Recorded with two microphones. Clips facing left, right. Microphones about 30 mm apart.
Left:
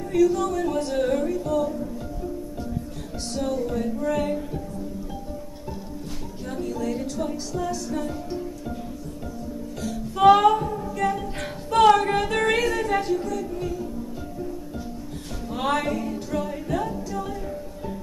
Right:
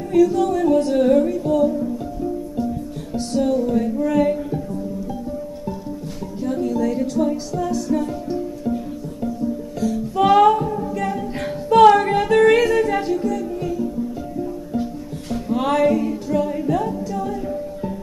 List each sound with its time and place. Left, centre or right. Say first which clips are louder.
0.1 s music: right 5 dB; centre
1.4 s music: right 6 dB; centre
3.2 s music: right 7 dB; centre
6.4 s music: right 8 dB; centre
9.8 s music: right 4 dB; centre
15.5 s music: right 7 dB; centre
16.3 s a capella: right 8 dB; centre